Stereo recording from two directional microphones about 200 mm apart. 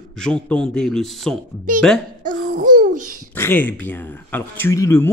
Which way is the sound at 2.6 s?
40° right (ahead or behind).